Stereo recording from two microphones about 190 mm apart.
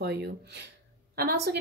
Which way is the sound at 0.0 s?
60° right (ahead or behind).